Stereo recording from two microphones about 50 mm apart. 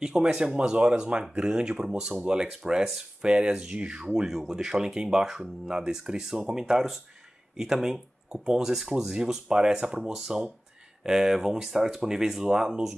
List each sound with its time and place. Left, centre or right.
0.0 s speech: centre